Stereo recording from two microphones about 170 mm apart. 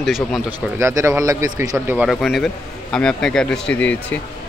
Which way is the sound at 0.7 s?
15° right (ahead or behind).